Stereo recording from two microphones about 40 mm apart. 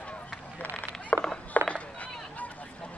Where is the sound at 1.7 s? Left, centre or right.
Left.